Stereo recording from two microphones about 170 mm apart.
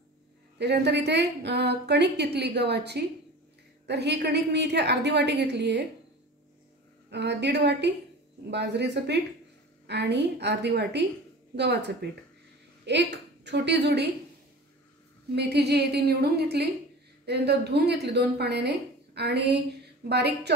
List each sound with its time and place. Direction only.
0.6 s a woman's voice: 85° right
7.1 s a woman's voice: 90° right
15.3 s a woman's voice: 75° right (ahead or behind)